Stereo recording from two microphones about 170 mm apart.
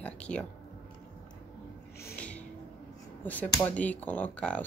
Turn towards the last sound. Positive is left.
turn(degrees=10)  # may be behind; listen again after turning